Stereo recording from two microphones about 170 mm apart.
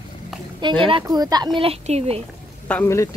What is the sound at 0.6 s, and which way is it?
Speech, 30° right (ahead or behind).